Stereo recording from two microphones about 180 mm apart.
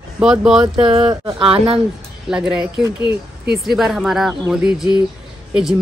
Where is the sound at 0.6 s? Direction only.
30° right (ahead or behind).